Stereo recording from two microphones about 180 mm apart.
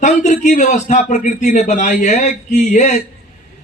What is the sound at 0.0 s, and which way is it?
Speech, 40° left (ahead or behind).